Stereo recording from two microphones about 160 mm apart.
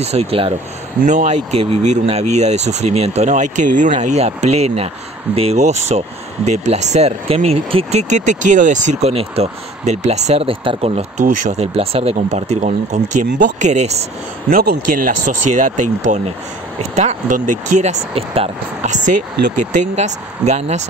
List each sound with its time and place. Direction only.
0.0 s speech: 40° right (ahead or behind)
14.6 s speech: 65° right (ahead or behind); by 20.8 s 45° right (ahead or behind)